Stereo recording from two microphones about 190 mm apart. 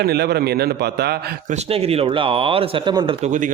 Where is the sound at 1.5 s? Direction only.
30° right (ahead or behind).